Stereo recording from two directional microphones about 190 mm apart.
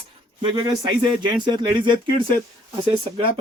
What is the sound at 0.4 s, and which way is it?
Speech, 25° right (ahead or behind).